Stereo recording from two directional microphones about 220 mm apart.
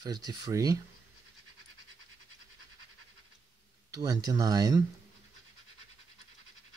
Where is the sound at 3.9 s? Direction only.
15° right (ahead or behind).